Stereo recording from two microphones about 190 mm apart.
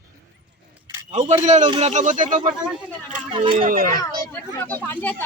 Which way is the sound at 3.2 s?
25° right (ahead or behind).